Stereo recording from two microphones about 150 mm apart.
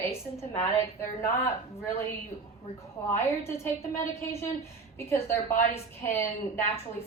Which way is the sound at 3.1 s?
15° left (ahead or behind).